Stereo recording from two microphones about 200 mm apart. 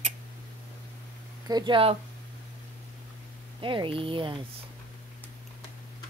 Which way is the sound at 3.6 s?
25° right (ahead or behind).